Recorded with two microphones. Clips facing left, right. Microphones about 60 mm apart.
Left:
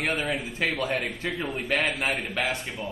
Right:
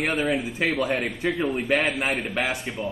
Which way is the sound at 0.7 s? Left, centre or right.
Right.